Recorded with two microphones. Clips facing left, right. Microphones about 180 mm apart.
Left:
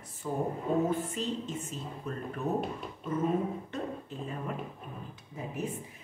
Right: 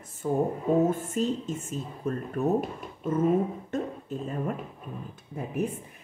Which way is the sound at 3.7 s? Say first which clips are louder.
Right 5 dB; 45° right (ahead or behind).